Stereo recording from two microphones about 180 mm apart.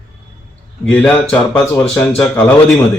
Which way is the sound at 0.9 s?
10° left (ahead or behind).